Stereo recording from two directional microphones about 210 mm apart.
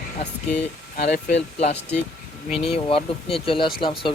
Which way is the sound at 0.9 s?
50° left (ahead or behind).